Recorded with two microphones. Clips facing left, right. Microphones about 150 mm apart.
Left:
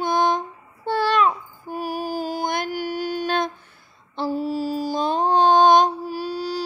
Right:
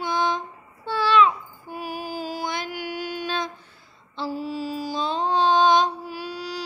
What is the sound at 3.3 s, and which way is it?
Humming, 55° left (ahead or behind).